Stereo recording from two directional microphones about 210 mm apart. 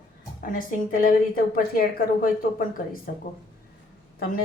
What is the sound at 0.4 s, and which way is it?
A woman's voice, 40° left (ahead or behind).